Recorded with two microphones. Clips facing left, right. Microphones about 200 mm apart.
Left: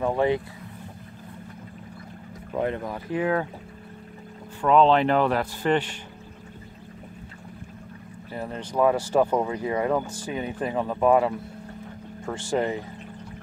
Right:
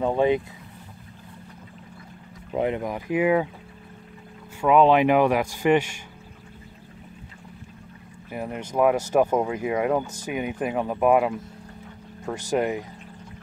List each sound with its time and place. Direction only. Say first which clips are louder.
0.0 s boat: right 2 dB; 20° right (ahead or behind)
2.5 s speech: right 2 dB; 15° right (ahead or behind)
4.6 s speech: right 1 dB; 10° right (ahead or behind)
8.3 s speech: right 2 dB; 15° right (ahead or behind)
12.4 s speech: right 1 dB; 15° right (ahead or behind)